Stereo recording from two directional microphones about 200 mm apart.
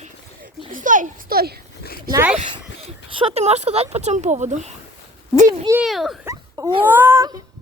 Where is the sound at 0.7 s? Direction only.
40° right (ahead or behind).